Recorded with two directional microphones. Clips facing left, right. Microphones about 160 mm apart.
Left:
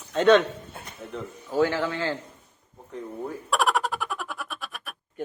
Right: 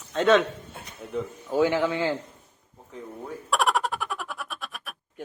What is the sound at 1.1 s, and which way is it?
Speech, 15° right (ahead or behind).